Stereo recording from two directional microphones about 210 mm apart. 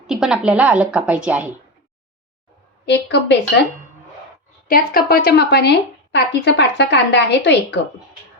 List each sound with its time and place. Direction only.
0.1 s a woman's voice: centre (ahead or behind)
2.8 s a woman's voice: 55° left (ahead or behind)
4.7 s a woman's voice: 45° left (ahead or behind)